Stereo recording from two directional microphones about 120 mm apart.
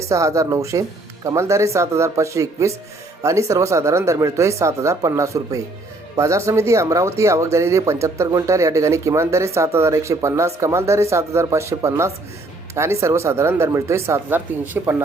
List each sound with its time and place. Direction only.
0.1 s speech: 25° right (ahead or behind)